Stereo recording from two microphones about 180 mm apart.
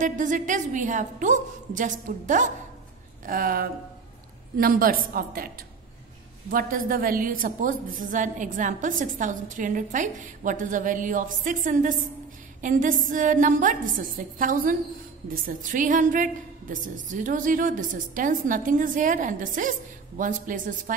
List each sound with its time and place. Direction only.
0.0 s a woman's voice: 45° right (ahead or behind)
6.5 s a woman's voice: 50° right (ahead or behind)